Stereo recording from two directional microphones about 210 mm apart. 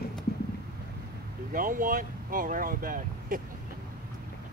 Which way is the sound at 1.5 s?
40° right (ahead or behind).